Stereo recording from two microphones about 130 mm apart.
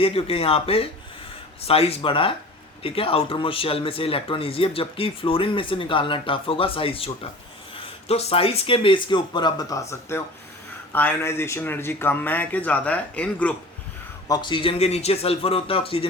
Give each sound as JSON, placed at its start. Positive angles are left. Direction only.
{"t": 0.0, "sound": "speech", "side_deg": 45}
{"t": 14.3, "sound": "speech", "side_deg": 35}